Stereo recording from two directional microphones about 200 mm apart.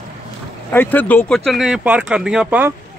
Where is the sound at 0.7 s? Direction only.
10° left (ahead or behind).